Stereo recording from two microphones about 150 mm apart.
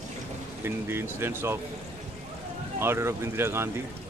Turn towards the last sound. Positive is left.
turn(degrees=-15)  # may be behind; listen again after turning